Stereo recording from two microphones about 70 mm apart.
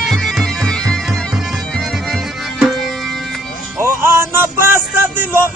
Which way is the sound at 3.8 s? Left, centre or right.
Right.